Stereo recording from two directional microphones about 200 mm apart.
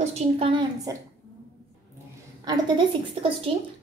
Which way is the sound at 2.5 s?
20° right (ahead or behind).